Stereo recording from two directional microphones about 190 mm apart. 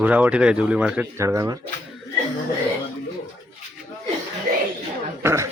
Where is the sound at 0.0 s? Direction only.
5° right (ahead or behind).